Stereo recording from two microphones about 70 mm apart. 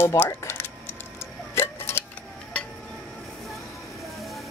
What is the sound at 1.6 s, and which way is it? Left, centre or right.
Tick-tock, left.